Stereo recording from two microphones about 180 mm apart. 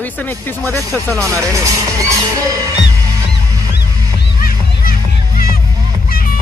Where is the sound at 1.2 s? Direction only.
15° right (ahead or behind).